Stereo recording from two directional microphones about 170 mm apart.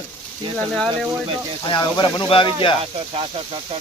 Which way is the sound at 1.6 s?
25° left (ahead or behind).